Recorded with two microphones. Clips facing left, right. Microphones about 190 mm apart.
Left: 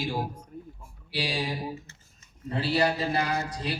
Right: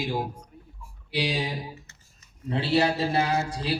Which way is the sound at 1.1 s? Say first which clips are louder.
Right 3 dB; 20° right (ahead or behind).